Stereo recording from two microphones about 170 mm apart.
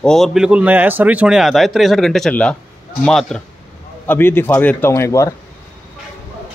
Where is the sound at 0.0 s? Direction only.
Centre (ahead or behind).